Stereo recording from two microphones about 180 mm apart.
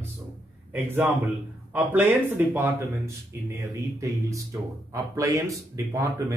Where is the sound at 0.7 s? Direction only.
10° right (ahead or behind).